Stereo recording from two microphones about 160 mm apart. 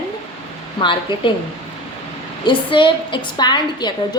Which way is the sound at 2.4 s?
30° left (ahead or behind).